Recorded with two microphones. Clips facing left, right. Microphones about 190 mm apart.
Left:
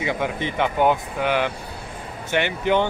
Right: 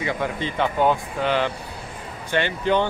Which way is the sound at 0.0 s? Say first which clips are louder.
Left 1 dB; 15° left (ahead or behind).